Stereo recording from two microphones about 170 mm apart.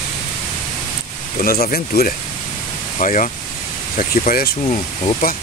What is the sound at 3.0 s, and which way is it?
Speech, 50° left (ahead or behind).